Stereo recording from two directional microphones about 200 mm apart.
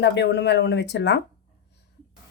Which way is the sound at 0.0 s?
60° left (ahead or behind).